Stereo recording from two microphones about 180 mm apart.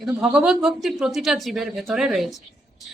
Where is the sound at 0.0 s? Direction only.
5° right (ahead or behind).